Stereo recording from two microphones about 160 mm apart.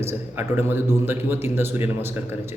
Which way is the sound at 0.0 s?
15° right (ahead or behind).